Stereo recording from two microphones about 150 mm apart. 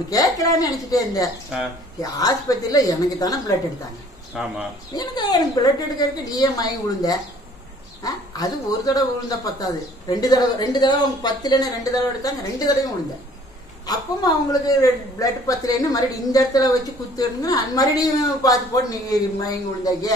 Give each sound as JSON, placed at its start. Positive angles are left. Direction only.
{"t": 0.1, "sound": "speech", "side_deg": 25}
{"t": 1.5, "sound": "speech", "side_deg": -5}
{"t": 2.0, "sound": "speech", "side_deg": 25}
{"t": 4.3, "sound": "speech", "side_deg": -5}
{"t": 4.9, "sound": "speech", "side_deg": 25}
{"t": 13.8, "sound": "speech", "side_deg": 25}